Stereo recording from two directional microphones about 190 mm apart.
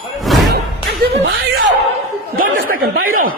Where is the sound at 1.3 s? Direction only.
70° right (ahead or behind).